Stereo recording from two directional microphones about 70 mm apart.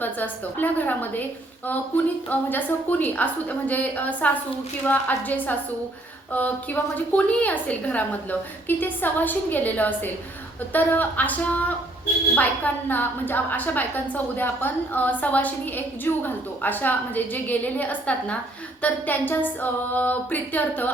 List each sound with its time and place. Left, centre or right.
0.0 s a woman's voice: left